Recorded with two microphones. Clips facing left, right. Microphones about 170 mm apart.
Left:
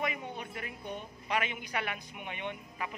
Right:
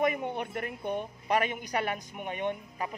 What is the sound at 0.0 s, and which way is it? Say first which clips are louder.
A woman's voice: right 8 dB; 55° right (ahead or behind).